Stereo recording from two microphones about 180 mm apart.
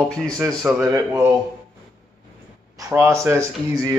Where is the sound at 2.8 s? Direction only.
15° right (ahead or behind).